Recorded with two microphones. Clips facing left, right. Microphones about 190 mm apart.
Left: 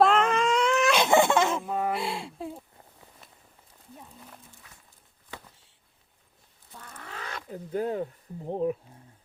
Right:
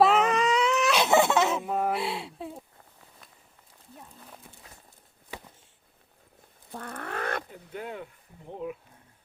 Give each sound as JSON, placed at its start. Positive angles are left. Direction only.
{"t": 0.0, "sound": "baby cry", "side_deg": 0}
{"t": 6.7, "sound": "fowl", "side_deg": -60}
{"t": 7.5, "sound": "speech", "side_deg": 35}